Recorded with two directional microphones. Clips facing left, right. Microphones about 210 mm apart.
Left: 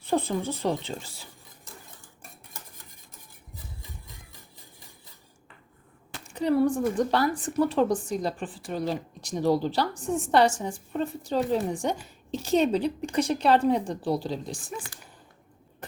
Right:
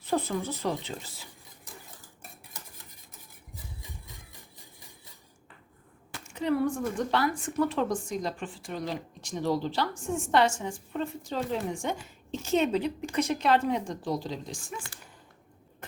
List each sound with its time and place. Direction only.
0.1 s speech: 30° left (ahead or behind)
6.2 s a woman's voice: 35° left (ahead or behind)